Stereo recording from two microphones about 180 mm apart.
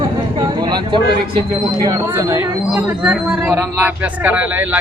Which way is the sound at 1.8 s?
20° right (ahead or behind).